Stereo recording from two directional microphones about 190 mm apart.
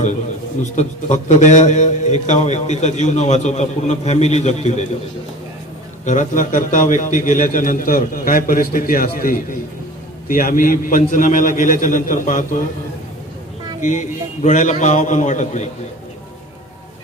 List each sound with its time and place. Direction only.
0.6 s a man's voice: 40° left (ahead or behind)
6.1 s a man's voice: 40° left (ahead or behind)
14.4 s a man's voice: 40° left (ahead or behind)